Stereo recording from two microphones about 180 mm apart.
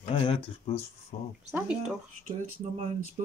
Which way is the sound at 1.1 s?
45° left (ahead or behind).